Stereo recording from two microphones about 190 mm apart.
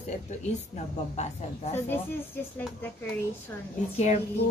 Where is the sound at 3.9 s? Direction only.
35° left (ahead or behind).